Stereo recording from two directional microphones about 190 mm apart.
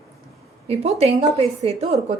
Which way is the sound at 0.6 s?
35° right (ahead or behind).